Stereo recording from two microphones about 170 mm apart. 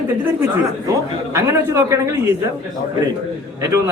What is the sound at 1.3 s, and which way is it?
Speech, 15° right (ahead or behind).